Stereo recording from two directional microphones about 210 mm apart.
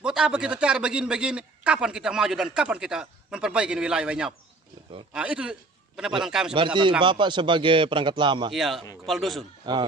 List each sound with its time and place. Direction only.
0.0 s a man's voice: 5° right (ahead or behind)
6.5 s speech: 20° right (ahead or behind)
8.5 s a man's voice: centre (ahead or behind)